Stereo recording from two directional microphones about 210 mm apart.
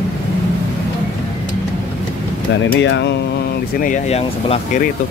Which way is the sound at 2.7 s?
60° left (ahead or behind).